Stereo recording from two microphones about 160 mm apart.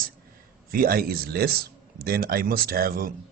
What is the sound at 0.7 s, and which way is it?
A man's voice, 65° right (ahead or behind).